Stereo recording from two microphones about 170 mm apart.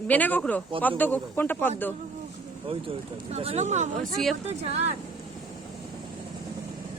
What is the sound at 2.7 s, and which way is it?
Speech, 35° right (ahead or behind).